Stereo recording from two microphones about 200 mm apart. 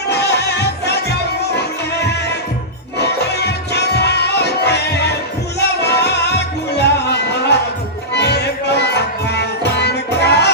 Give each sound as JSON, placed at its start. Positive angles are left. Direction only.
{"t": 0.1, "sound": "music", "side_deg": 55}